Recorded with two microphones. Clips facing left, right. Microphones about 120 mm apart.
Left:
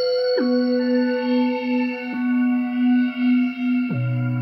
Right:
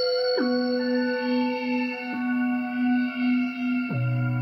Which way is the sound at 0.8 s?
50° left (ahead or behind).